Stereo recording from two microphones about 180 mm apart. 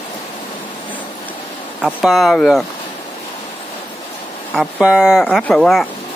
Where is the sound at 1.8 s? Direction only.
Centre (ahead or behind).